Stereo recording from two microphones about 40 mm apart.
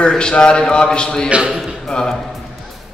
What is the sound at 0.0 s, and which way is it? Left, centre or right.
A man's voice, left.